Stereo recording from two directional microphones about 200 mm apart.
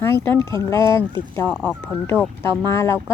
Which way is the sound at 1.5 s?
5° right (ahead or behind).